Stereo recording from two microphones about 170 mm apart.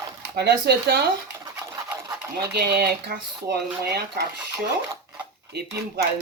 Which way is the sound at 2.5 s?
70° right (ahead or behind).